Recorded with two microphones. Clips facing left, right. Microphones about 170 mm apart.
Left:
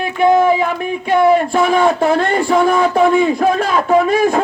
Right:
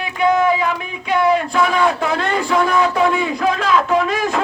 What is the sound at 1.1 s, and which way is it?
A man's voice, 50° left (ahead or behind).